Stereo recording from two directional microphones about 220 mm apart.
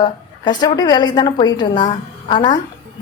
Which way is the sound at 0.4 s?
20° left (ahead or behind).